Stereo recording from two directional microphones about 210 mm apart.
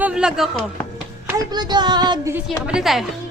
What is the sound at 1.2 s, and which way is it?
Speech, 15° right (ahead or behind).